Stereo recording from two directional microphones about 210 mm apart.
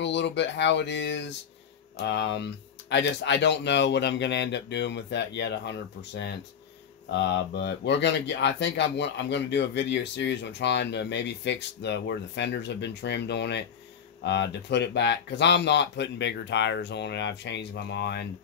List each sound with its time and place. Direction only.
0.0 s speech: 55° left (ahead or behind)